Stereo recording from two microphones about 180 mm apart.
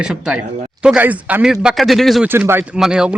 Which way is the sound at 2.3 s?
10° right (ahead or behind).